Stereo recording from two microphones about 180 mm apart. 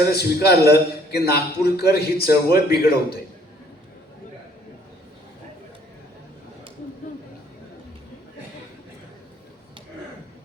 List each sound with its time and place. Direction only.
0.1 s a man's voice: 60° left (ahead or behind)